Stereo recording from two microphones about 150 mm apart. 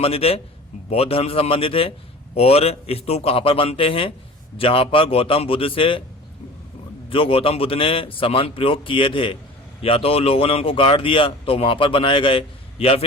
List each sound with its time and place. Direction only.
0.0 s speech: 40° left (ahead or behind)
7.1 s speech: 35° left (ahead or behind)